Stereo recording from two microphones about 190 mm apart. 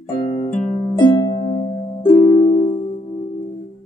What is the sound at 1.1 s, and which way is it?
Music, 25° left (ahead or behind).